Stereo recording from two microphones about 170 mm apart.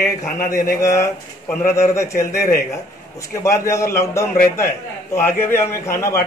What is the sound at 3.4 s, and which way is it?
A man's voice, 15° left (ahead or behind).